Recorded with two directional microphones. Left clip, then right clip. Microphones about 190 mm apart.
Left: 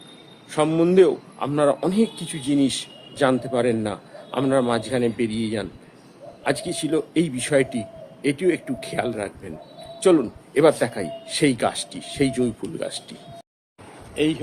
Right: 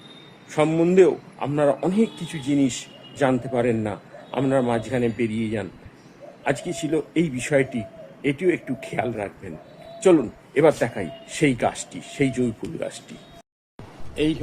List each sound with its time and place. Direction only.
0.5 s a man's voice: centre (ahead or behind)
14.2 s speech: 15° left (ahead or behind)